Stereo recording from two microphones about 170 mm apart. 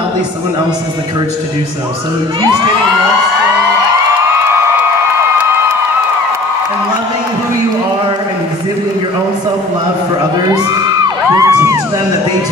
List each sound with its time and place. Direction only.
10.5 s music: 20° right (ahead or behind)